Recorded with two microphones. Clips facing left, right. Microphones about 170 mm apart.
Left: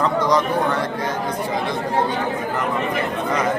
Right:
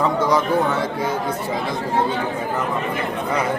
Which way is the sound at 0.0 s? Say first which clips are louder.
Even; 5° right (ahead or behind).